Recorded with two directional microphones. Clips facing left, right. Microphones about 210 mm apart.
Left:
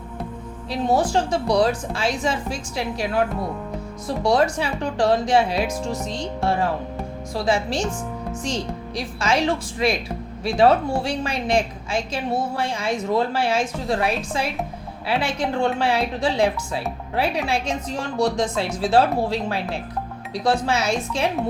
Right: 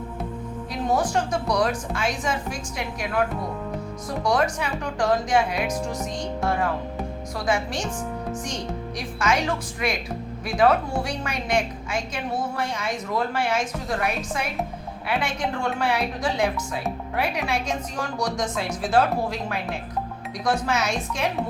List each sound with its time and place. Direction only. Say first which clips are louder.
0.7 s a woman's voice: left 4 dB; 30° left (ahead or behind)
4.2 s a woman's voice: left 4 dB; 30° left (ahead or behind)
9.0 s a woman's voice: left 3 dB; 30° left (ahead or behind)